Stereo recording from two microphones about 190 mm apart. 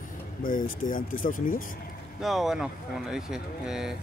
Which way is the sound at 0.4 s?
45° left (ahead or behind).